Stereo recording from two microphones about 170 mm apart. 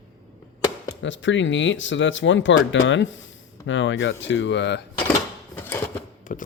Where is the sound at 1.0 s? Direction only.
90° left.